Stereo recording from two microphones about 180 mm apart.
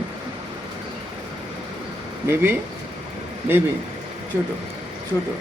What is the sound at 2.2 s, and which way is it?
Speech, 10° right (ahead or behind).